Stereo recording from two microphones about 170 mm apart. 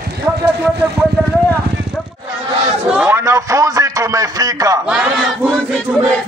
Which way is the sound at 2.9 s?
10° right (ahead or behind).